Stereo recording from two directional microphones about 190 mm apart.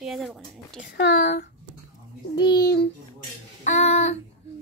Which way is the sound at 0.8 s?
60° left (ahead or behind).